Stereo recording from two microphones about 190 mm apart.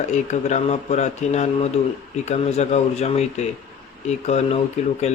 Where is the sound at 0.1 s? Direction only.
40° left (ahead or behind).